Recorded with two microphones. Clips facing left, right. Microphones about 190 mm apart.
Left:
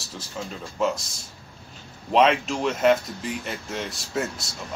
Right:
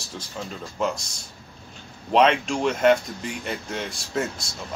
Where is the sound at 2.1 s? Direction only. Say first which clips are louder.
Even; centre (ahead or behind).